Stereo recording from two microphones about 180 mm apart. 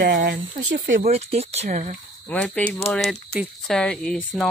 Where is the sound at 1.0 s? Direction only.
35° right (ahead or behind).